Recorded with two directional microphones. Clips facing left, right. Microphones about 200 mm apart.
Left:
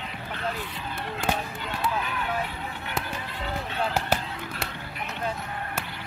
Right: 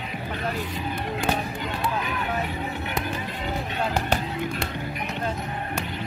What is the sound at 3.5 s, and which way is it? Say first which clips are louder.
Run: right 1 dB; 15° right (ahead or behind).